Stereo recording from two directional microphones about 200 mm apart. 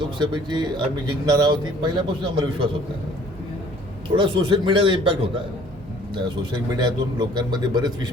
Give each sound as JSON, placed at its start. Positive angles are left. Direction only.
{"t": 0.0, "sound": "speech", "side_deg": -20}
{"t": 4.1, "sound": "speech", "side_deg": -25}
{"t": 6.2, "sound": "speech", "side_deg": -20}